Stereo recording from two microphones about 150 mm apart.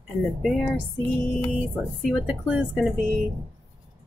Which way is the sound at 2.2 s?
5° right (ahead or behind).